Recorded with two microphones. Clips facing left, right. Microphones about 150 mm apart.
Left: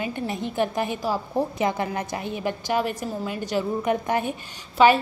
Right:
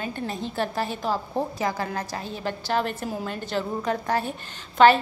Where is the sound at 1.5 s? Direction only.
20° left (ahead or behind).